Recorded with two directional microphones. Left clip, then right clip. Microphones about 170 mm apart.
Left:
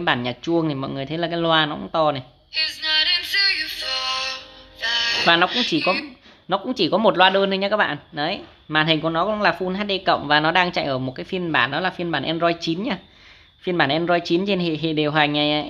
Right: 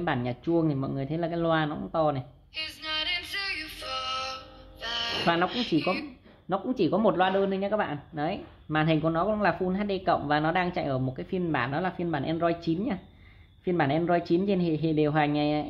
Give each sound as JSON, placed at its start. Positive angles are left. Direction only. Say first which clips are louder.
{"t": 0.0, "sound": "speech", "louder": "left 8 dB", "side_deg": 20}
{"t": 2.5, "sound": "music", "louder": "left 12 dB", "side_deg": -5}
{"t": 5.8, "sound": "speech", "louder": "left 6 dB", "side_deg": 0}
{"t": 6.5, "sound": "speech", "louder": "left 6 dB", "side_deg": 15}
{"t": 8.2, "sound": "speech", "louder": "left 5 dB", "side_deg": 15}